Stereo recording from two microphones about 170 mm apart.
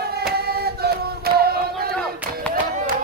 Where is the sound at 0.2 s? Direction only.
65° right (ahead or behind).